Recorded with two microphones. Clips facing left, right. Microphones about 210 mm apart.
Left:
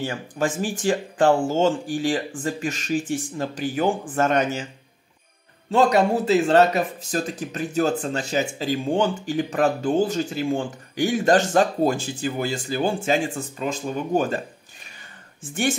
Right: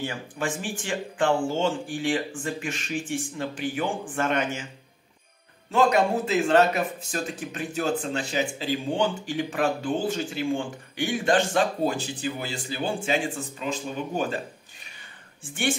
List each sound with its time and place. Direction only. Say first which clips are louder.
0.0 s speech: left 5 dB; 40° left (ahead or behind)
5.7 s speech: left 3 dB; 35° left (ahead or behind)